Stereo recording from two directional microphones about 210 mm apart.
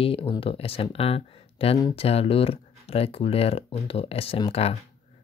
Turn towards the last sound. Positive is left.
turn(degrees=30)  # may be behind; listen again after turning